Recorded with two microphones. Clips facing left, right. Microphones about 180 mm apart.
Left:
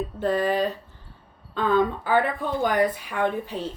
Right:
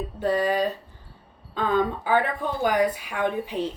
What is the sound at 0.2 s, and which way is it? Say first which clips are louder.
Speech: even; 15° right (ahead or behind).